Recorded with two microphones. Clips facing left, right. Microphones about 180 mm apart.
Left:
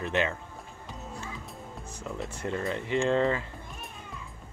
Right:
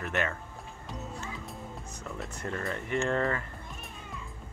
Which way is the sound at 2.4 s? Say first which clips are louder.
Left 3 dB; 20° left (ahead or behind).